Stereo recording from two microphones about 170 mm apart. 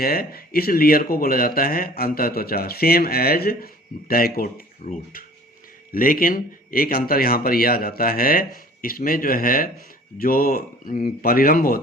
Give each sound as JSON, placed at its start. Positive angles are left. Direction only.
{"t": 0.0, "sound": "speech", "side_deg": 60}